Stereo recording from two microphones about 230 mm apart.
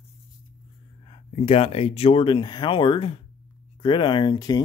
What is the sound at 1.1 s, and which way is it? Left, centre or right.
Speech, left.